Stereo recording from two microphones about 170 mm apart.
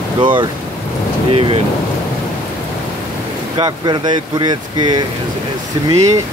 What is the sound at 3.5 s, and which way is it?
Speech, 25° right (ahead or behind).